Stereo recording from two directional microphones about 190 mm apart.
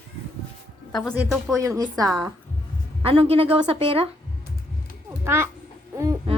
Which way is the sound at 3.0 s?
30° right (ahead or behind).